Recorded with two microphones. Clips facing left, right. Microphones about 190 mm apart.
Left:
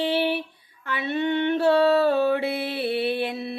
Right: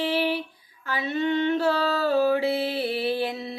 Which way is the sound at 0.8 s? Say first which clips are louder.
Left 1 dB; 60° left (ahead or behind).